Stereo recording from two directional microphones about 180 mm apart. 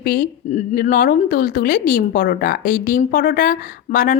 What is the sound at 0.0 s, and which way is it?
A woman's voice, 55° left (ahead or behind).